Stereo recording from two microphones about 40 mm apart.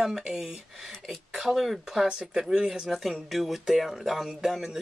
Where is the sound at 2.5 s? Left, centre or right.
Centre.